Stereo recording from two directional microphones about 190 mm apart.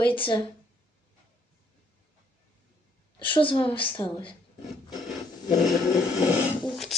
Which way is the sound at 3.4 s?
25° left (ahead or behind).